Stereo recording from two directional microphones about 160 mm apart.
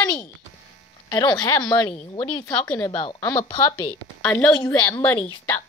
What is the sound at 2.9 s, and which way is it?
A woman's voice, 35° left (ahead or behind).